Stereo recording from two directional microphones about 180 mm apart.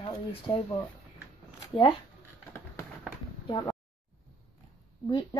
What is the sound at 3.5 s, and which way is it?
Speech, 25° left (ahead or behind).